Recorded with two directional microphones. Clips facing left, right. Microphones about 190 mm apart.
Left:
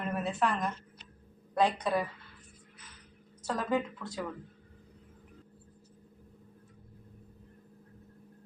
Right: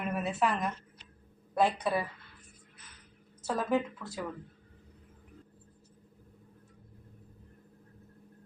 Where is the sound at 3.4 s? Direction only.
5° right (ahead or behind).